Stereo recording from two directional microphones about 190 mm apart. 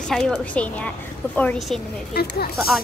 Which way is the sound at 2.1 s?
55° left (ahead or behind).